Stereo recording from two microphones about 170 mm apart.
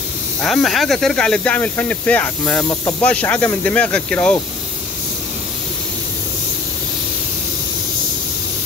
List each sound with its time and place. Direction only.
0.4 s speech: centre (ahead or behind)